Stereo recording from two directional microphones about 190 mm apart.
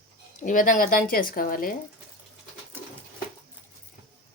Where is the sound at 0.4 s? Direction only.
45° left (ahead or behind).